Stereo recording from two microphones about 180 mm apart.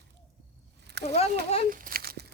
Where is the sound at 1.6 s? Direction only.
50° right (ahead or behind).